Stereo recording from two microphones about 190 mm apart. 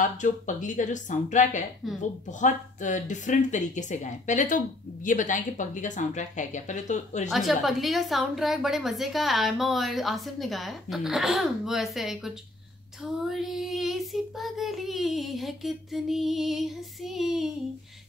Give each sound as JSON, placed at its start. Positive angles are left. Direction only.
{"t": 0.0, "sound": "speech", "side_deg": 40}
{"t": 7.2, "sound": "a woman's voice", "side_deg": 0}